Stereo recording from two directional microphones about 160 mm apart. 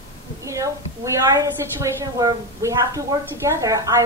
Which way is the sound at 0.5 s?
20° right (ahead or behind).